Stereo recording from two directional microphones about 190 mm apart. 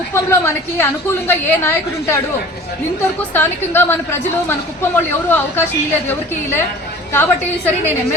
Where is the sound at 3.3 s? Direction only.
10° left (ahead or behind).